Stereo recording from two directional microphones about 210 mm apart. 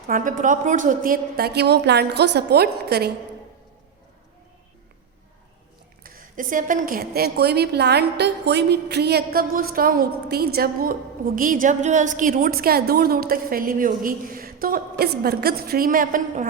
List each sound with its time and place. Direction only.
0.1 s a woman's voice: 40° right (ahead or behind)
6.0 s a woman's voice: 45° right (ahead or behind)